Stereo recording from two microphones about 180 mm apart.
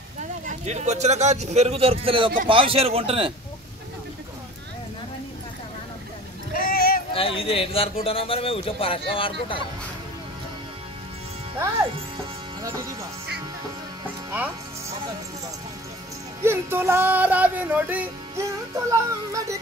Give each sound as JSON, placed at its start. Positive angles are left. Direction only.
{"t": 0.5, "sound": "a man's voice", "side_deg": -40}
{"t": 6.5, "sound": "a sound", "side_deg": 55}
{"t": 7.2, "sound": "speech", "side_deg": 30}
{"t": 16.4, "sound": "music", "side_deg": -10}